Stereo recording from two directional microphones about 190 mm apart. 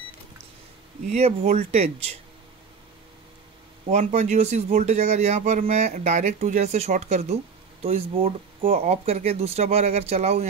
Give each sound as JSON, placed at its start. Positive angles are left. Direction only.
{"t": 1.1, "sound": "speech", "side_deg": -35}
{"t": 3.9, "sound": "speech", "side_deg": -40}